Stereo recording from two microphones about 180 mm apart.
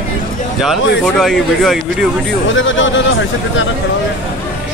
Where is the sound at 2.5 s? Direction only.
90° left.